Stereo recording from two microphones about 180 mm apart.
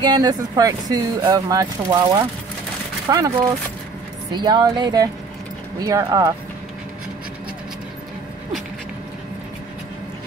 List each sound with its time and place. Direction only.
0.0 s speech: 20° right (ahead or behind)
4.3 s speech: 25° right (ahead or behind)